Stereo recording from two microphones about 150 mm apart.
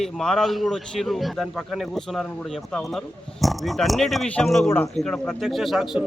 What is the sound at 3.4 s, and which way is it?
A man's voice, centre (ahead or behind).